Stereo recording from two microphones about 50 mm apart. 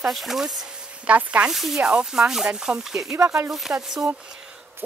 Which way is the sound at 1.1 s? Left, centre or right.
Right.